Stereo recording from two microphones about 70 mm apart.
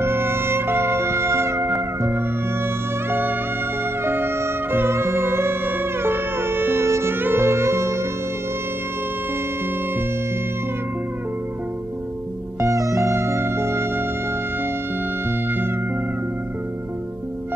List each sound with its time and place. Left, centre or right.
0.0 s music: right
12.5 s music: right